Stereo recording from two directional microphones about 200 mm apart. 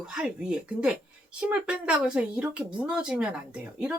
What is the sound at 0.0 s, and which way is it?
Speech, 5° right (ahead or behind).